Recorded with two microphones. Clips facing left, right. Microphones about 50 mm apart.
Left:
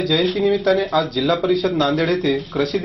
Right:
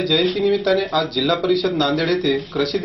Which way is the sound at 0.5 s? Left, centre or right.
Left.